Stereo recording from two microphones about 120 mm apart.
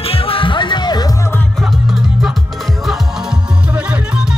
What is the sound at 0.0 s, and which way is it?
Music, 50° left (ahead or behind).